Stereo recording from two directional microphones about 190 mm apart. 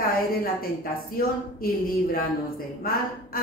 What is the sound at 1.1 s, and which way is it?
Speech, 50° left (ahead or behind).